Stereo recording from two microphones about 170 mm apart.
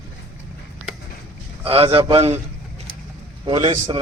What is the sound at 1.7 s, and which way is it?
Speech, 35° right (ahead or behind).